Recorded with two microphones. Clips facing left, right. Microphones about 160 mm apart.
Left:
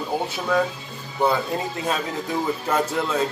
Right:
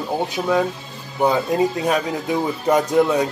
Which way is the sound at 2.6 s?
15° right (ahead or behind).